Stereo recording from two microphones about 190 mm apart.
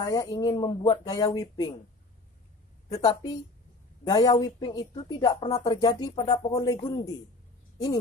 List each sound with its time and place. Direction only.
0.0 s speech: 20° left (ahead or behind)
3.0 s speech: 20° left (ahead or behind)